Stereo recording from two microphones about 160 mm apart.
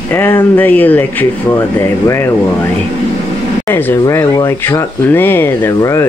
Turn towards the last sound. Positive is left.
turn(degrees=20)  # may be behind; listen again after turning